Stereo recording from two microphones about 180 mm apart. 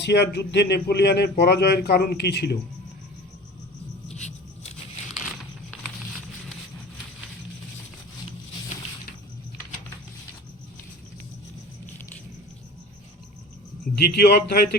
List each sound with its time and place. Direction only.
0.0 s speech: 70° left (ahead or behind)
4.1 s a sound: 40° left (ahead or behind)
13.9 s speech: 60° left (ahead or behind)